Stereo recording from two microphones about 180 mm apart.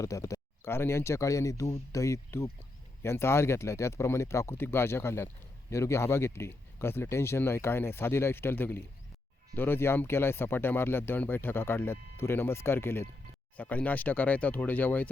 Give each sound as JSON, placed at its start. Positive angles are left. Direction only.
{"t": 0.0, "sound": "speech", "side_deg": 15}